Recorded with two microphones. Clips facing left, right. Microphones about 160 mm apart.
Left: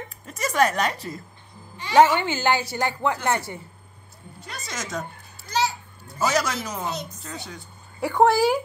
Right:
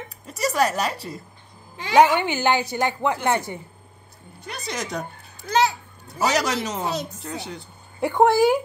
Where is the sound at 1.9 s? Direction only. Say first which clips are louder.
Right 1 dB; 15° right (ahead or behind).